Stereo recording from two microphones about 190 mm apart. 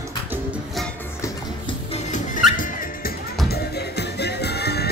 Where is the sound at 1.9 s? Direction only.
40° left (ahead or behind).